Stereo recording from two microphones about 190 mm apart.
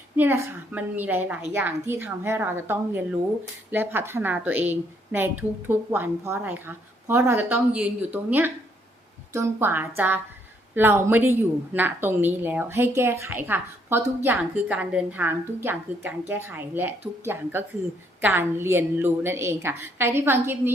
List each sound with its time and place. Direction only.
0.2 s a woman's voice: 10° right (ahead or behind)